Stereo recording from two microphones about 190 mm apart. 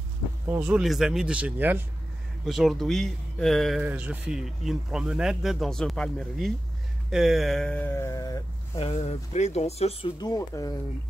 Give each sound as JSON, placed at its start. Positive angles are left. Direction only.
{"t": 0.5, "sound": "speech", "side_deg": -5}
{"t": 8.7, "sound": "speech", "side_deg": 30}